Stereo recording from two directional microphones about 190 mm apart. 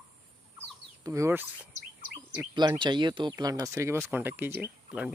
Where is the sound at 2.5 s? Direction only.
25° right (ahead or behind); by 5.1 s 10° right (ahead or behind).